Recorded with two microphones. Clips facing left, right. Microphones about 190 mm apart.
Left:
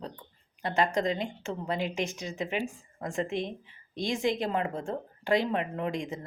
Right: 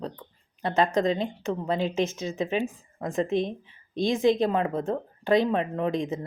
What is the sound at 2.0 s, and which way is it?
Speech, 15° left (ahead or behind).